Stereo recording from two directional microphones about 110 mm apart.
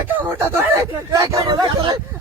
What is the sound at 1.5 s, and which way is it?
Speech, 45° right (ahead or behind).